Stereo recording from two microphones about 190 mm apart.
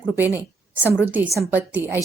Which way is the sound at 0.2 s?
10° right (ahead or behind).